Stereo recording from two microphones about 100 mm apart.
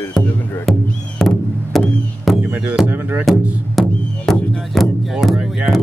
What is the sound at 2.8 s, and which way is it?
Speech, 15° right (ahead or behind).